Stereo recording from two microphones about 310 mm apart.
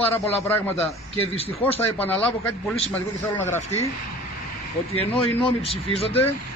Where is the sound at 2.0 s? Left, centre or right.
Centre.